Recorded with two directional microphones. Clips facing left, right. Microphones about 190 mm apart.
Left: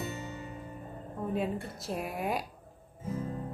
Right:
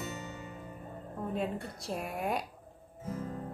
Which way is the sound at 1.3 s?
5° left (ahead or behind).